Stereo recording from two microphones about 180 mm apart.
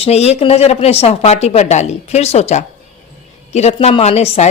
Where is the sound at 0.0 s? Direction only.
35° left (ahead or behind).